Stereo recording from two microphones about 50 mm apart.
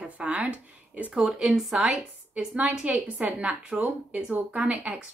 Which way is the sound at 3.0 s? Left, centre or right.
Right.